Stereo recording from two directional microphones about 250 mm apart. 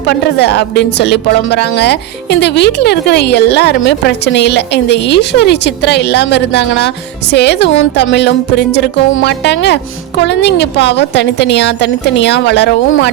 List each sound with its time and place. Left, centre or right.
0.0 s speech: left